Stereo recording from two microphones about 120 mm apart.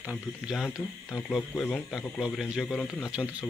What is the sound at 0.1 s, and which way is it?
A man's voice, centre (ahead or behind).